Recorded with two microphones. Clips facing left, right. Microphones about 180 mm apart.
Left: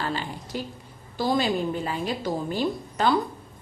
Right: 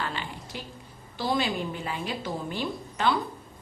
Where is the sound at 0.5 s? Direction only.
40° left (ahead or behind).